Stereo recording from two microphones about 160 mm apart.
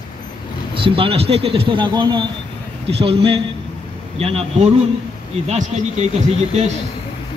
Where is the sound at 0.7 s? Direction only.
35° right (ahead or behind).